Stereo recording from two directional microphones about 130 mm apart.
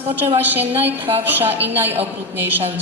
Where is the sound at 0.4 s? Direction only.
15° right (ahead or behind).